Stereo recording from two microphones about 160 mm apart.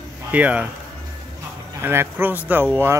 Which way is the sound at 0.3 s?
10° right (ahead or behind).